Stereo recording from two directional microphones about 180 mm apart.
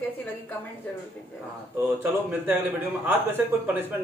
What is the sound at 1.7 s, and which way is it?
Speech, 10° right (ahead or behind).